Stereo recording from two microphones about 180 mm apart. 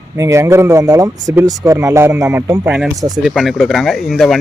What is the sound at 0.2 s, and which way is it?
Speech, 15° right (ahead or behind).